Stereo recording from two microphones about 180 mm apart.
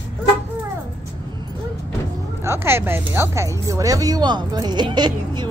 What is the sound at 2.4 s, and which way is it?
Speech, 15° right (ahead or behind).